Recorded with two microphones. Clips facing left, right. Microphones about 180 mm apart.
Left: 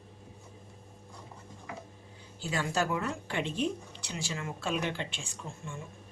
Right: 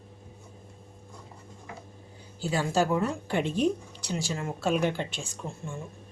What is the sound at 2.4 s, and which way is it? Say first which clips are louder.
Speech: right 5 dB; 30° right (ahead or behind).